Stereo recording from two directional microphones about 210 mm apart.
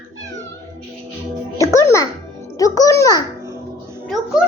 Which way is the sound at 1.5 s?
15° left (ahead or behind).